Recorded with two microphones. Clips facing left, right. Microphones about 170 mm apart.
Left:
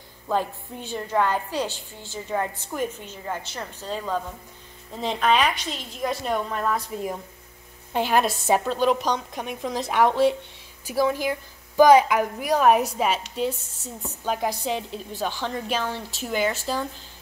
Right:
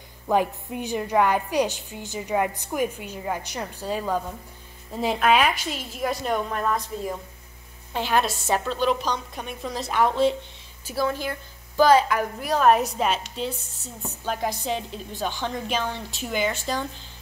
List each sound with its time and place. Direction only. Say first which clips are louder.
0.3 s a woman's voice: right 3 dB; 15° right (ahead or behind)
7.9 s a woman's voice: left 2 dB; 5° left (ahead or behind)
14.2 s a woman's voice: left 2 dB; 5° left (ahead or behind)